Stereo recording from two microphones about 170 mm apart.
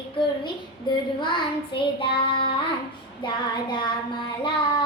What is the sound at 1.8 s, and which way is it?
Child singing, 30° left (ahead or behind).